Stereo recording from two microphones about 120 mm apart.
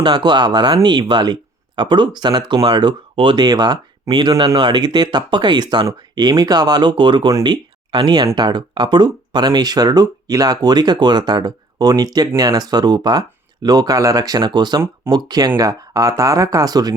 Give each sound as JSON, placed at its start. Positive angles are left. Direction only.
{"t": 0.0, "sound": "speech", "side_deg": -40}